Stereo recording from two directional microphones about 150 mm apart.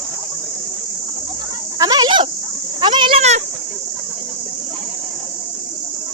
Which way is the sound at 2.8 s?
30° right (ahead or behind).